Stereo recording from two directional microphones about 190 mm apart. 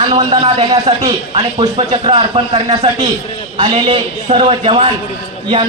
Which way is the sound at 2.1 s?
35° right (ahead or behind).